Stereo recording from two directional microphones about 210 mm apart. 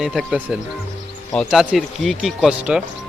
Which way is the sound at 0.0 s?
Centre (ahead or behind).